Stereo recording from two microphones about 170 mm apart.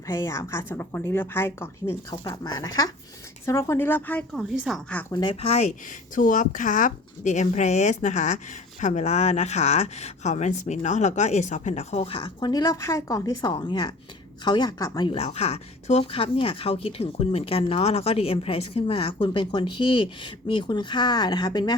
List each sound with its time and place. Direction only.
0.1 s a woman's voice: 15° left (ahead or behind)
4.4 s speech: centre (ahead or behind)
5.1 s speech: 25° left (ahead or behind)
5.4 s speech: 40° left (ahead or behind); by 21.8 s 25° left (ahead or behind)